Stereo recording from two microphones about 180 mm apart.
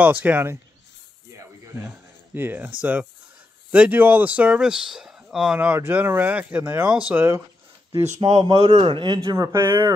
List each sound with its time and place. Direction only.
0.0 s speech: 10° right (ahead or behind)
1.3 s a sound: 15° right (ahead or behind)
2.8 s speech: 10° right (ahead or behind)
7.9 s speech: 30° right (ahead or behind); by 9.9 s 15° right (ahead or behind)